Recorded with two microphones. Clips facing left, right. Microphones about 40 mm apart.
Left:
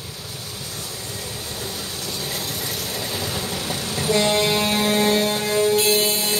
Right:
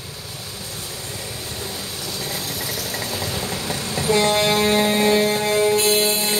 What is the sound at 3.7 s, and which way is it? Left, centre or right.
Music, right.